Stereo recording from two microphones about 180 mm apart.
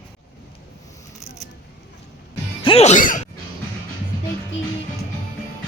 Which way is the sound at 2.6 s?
35° left (ahead or behind).